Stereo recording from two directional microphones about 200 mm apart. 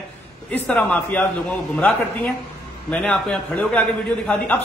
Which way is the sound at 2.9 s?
5° left (ahead or behind).